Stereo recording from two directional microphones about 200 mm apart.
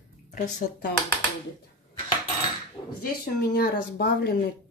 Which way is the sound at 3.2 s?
45° left (ahead or behind).